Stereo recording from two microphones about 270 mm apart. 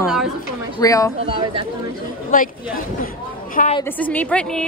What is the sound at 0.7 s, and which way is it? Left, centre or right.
Speech, centre.